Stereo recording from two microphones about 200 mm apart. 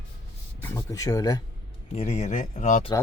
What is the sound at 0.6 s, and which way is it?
Speech, 15° left (ahead or behind).